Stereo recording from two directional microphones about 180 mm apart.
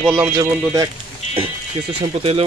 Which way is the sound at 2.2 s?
35° right (ahead or behind).